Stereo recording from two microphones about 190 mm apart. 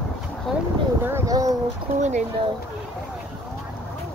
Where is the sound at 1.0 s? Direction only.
15° right (ahead or behind).